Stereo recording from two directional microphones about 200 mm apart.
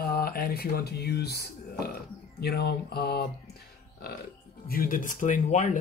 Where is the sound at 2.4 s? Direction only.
50° left (ahead or behind).